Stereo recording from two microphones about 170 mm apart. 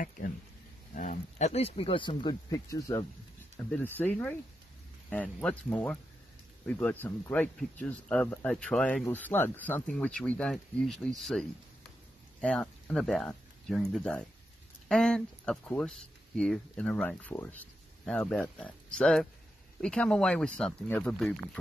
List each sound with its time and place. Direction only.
0.9 s speech: 45° left (ahead or behind); by 21.4 s 5° left (ahead or behind)